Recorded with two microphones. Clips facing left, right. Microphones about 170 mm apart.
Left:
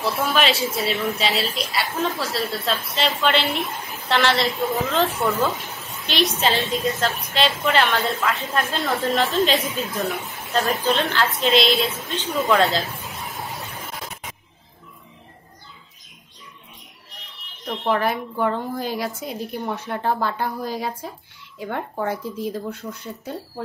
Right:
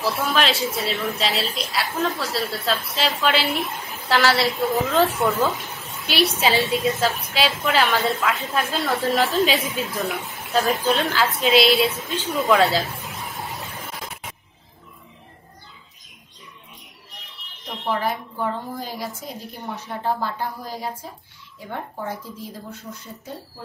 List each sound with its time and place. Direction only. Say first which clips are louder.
0.0 s a woman's voice: left 1 dB; centre (ahead or behind)
17.8 s a woman's voice: left 3 dB; 65° left (ahead or behind)